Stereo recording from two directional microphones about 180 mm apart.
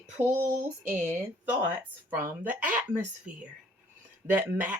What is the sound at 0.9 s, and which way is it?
Speech, 40° right (ahead or behind).